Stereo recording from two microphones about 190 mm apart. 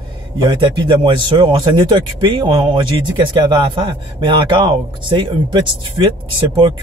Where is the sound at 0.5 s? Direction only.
25° right (ahead or behind).